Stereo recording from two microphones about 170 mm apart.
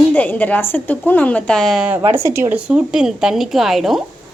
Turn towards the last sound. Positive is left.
turn(degrees=0)  # may be behind; listen again after turning